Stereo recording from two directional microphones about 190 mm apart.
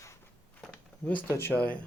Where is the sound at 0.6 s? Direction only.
5° left (ahead or behind).